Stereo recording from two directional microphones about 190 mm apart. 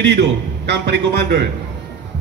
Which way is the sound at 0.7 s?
60° right (ahead or behind).